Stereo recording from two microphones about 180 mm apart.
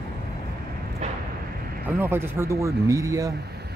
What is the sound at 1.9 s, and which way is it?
Speech, 10° right (ahead or behind).